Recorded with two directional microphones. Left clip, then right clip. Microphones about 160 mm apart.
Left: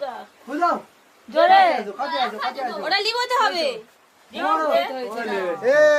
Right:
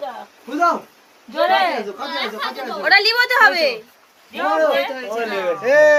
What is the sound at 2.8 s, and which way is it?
Speech, 5° right (ahead or behind).